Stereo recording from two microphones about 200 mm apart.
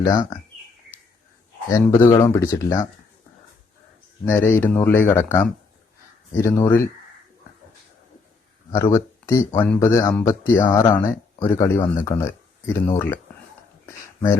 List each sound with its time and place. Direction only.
0.0 s speech: 20° left (ahead or behind)
1.8 s speech: 15° left (ahead or behind)
4.3 s speech: 10° left (ahead or behind)
8.9 s speech: 15° left (ahead or behind)
13.8 s a sound: 10° left (ahead or behind)